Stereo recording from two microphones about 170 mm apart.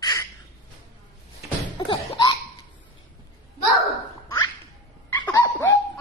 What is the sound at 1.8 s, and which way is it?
Laughter, 20° left (ahead or behind).